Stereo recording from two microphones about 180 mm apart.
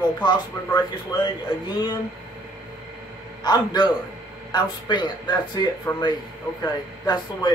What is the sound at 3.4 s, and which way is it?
Speech, 25° left (ahead or behind).